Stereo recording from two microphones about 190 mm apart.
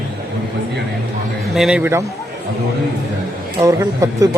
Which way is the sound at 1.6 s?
5° right (ahead or behind).